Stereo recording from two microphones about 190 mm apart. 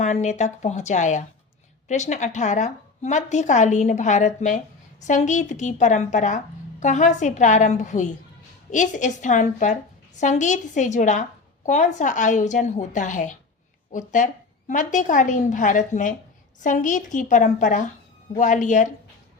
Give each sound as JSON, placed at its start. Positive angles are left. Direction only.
{"t": 0.0, "sound": "a woman's voice", "side_deg": 40}